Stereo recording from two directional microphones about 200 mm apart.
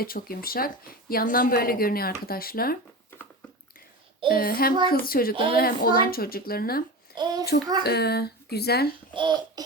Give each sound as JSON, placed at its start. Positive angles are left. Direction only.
{"t": 0.0, "sound": "speech", "side_deg": 45}
{"t": 4.3, "sound": "speech", "side_deg": 45}
{"t": 7.2, "sound": "babbling", "side_deg": -20}
{"t": 7.9, "sound": "speech", "side_deg": 55}
{"t": 9.1, "sound": "babbling", "side_deg": -20}